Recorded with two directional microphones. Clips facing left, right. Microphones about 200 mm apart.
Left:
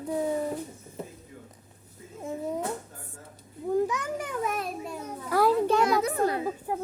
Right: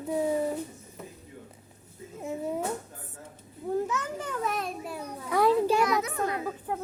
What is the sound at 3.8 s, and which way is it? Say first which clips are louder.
Speech: left 1 dB; 15° left (ahead or behind).